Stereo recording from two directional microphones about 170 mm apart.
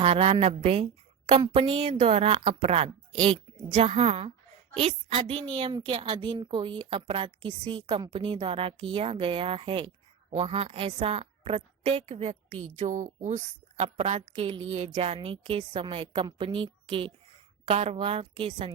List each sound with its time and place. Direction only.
0.0 s a woman's voice: 40° right (ahead or behind)